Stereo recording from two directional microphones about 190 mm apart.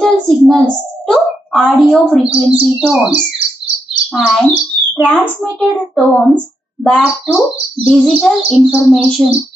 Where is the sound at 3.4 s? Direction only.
30° right (ahead or behind).